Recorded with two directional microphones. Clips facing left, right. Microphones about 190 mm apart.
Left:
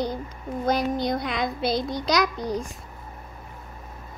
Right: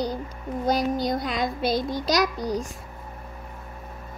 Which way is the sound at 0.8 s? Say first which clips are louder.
Even; 40° right (ahead or behind).